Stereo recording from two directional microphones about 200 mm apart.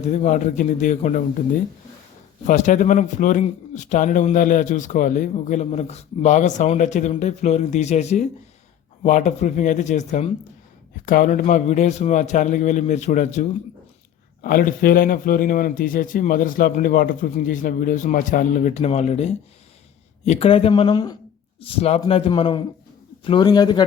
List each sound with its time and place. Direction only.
0.1 s speech: 35° left (ahead or behind)
2.5 s speech: 35° left (ahead or behind); by 21.2 s 20° left (ahead or behind)
21.6 s speech: 30° left (ahead or behind)